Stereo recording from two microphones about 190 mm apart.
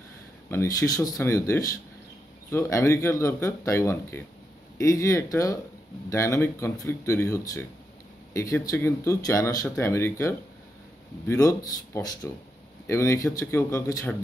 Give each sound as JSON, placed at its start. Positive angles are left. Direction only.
{"t": 0.5, "sound": "speech", "side_deg": 15}